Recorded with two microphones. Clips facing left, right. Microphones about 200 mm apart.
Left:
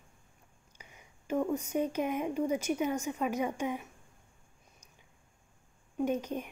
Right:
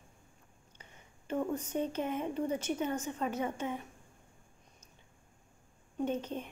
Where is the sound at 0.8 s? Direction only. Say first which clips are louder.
Left 2 dB; 10° left (ahead or behind).